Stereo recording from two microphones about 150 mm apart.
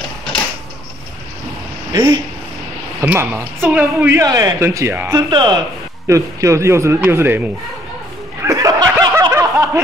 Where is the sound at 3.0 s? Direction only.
10° right (ahead or behind).